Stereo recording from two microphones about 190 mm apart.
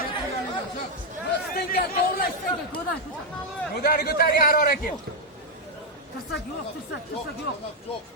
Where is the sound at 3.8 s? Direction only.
55° left (ahead or behind).